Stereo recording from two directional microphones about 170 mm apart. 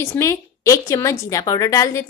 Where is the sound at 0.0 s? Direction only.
15° left (ahead or behind).